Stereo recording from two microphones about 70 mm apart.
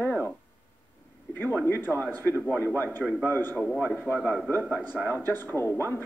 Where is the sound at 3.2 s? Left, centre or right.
Left.